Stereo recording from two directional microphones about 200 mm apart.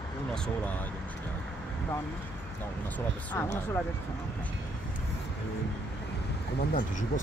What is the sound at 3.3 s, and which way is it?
Speech, 10° left (ahead or behind).